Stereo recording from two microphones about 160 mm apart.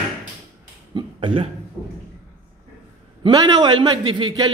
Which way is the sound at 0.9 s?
35° right (ahead or behind).